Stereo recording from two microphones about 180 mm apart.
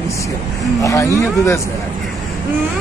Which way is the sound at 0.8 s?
15° left (ahead or behind).